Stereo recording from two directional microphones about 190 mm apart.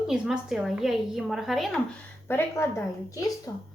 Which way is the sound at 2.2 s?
15° left (ahead or behind).